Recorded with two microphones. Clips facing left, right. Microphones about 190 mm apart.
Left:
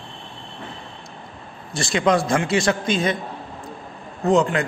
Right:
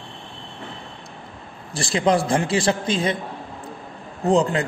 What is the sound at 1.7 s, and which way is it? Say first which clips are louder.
A man's voice: even; 30° right (ahead or behind).